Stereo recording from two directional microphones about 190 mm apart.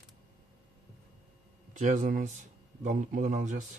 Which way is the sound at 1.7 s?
40° right (ahead or behind).